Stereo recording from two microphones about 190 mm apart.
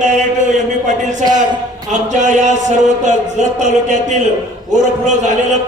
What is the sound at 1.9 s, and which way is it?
A man's voice, 40° right (ahead or behind).